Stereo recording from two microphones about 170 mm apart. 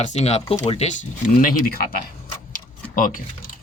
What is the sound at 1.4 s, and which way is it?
Speech, 55° left (ahead or behind).